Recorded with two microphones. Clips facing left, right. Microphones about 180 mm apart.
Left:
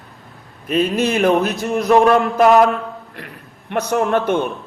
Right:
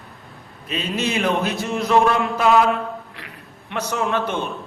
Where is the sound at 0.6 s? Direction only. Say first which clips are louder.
Left 7 dB; 45° left (ahead or behind).